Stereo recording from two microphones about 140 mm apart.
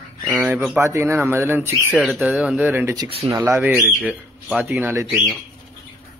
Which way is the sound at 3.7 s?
5° right (ahead or behind).